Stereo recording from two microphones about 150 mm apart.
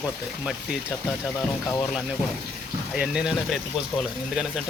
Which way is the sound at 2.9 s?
5° right (ahead or behind).